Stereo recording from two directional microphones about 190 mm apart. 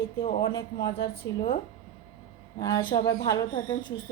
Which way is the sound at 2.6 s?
20° left (ahead or behind).